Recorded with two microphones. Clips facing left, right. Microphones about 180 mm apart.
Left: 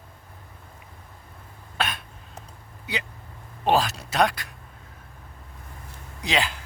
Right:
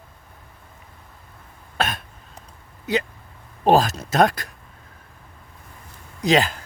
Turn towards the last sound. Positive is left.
turn(degrees=-45)  # may be behind; listen again after turning